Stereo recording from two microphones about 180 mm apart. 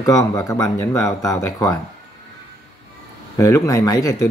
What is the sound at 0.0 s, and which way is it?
Speech, 20° left (ahead or behind).